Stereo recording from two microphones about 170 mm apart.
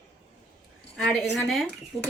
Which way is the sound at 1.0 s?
10° left (ahead or behind).